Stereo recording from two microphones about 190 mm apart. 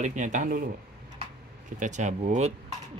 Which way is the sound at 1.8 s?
40° right (ahead or behind).